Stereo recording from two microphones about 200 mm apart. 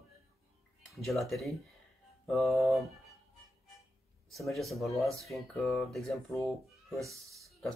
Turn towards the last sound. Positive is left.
turn(degrees=0)  # may be behind; listen again after turning